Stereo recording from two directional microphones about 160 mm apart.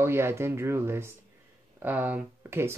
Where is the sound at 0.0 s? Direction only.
15° right (ahead or behind).